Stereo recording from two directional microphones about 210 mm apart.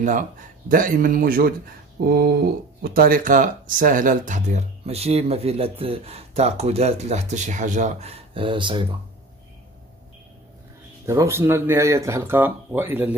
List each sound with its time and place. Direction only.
0.7 s speech: 40° right (ahead or behind); by 8.8 s 25° right (ahead or behind)
11.1 s speech: 10° right (ahead or behind)